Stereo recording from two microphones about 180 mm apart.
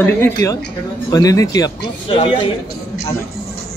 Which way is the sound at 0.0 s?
15° left (ahead or behind).